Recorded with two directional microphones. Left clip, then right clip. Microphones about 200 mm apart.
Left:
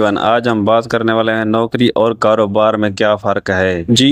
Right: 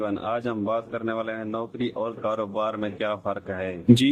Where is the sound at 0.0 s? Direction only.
45° left (ahead or behind).